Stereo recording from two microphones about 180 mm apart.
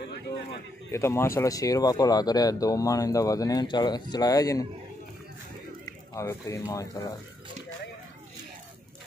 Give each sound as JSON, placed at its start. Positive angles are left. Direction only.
{"t": 0.9, "sound": "speech", "side_deg": 15}
{"t": 6.1, "sound": "speech", "side_deg": 15}